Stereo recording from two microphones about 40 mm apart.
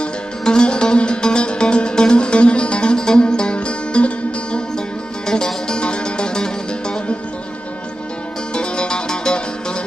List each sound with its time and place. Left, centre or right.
0.4 s music: left
5.2 s music: centre
8.5 s music: left